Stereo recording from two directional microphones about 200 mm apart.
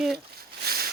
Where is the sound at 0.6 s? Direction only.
50° right (ahead or behind).